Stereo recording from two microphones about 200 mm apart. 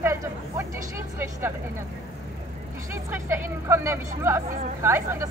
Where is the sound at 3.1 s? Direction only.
10° right (ahead or behind).